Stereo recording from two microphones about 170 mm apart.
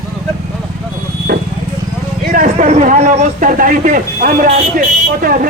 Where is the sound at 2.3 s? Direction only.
50° right (ahead or behind).